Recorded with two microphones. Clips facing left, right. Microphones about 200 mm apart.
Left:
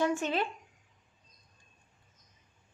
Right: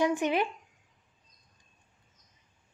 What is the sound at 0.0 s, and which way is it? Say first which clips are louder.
Speech: right 3 dB; 15° right (ahead or behind).